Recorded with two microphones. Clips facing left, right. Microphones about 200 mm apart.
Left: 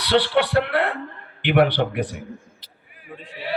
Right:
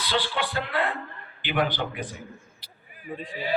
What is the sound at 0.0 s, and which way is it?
A man's voice, 70° left (ahead or behind).